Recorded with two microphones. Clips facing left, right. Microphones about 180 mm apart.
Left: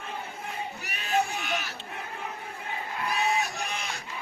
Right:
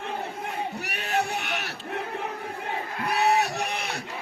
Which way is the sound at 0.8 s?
70° right (ahead or behind).